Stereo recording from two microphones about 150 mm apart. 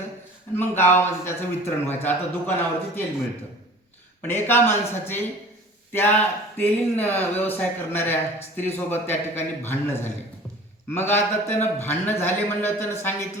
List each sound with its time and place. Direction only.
0.5 s speech: 15° left (ahead or behind)
4.2 s speech: 15° left (ahead or behind)